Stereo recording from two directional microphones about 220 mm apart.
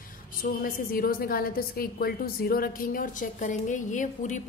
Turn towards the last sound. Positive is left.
turn(degrees=35)  # may be behind; listen again after turning